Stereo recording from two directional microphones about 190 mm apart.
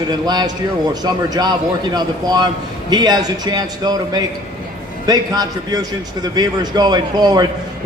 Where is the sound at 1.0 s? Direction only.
20° right (ahead or behind).